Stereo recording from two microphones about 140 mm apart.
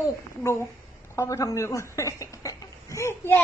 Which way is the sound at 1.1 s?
20° left (ahead or behind).